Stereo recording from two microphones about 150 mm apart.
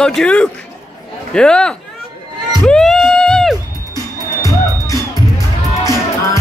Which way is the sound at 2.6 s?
Centre (ahead or behind).